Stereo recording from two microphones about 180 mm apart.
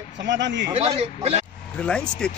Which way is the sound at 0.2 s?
85° right.